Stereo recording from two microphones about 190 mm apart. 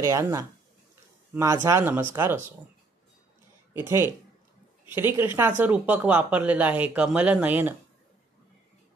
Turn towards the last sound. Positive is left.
turn(degrees=-10)  # may be behind; listen again after turning